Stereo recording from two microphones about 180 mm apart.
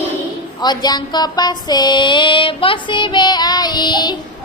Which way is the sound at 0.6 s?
25° left (ahead or behind).